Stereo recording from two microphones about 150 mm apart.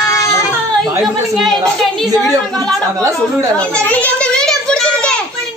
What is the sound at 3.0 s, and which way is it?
Speech, 20° right (ahead or behind).